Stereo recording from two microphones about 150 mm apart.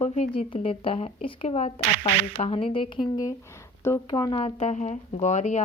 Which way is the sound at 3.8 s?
25° left (ahead or behind).